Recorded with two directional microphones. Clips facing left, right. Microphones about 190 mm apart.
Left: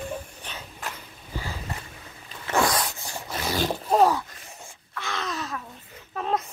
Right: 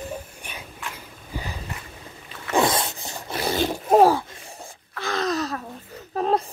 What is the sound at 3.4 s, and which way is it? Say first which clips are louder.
Wail: right 3 dB; 30° right (ahead or behind).